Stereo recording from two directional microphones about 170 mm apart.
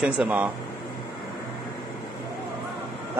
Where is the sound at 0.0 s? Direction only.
5° right (ahead or behind).